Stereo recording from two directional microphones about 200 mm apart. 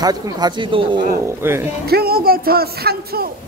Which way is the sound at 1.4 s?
10° right (ahead or behind).